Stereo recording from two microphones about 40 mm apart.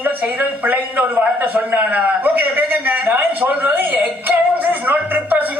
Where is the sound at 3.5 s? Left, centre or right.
Right.